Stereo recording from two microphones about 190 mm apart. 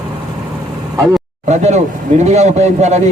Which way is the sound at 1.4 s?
35° right (ahead or behind).